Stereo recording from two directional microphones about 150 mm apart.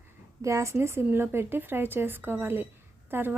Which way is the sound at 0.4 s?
20° right (ahead or behind).